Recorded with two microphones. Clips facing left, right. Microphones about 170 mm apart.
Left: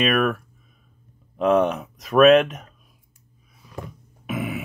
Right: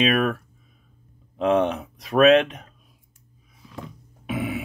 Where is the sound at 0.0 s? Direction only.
50° left (ahead or behind).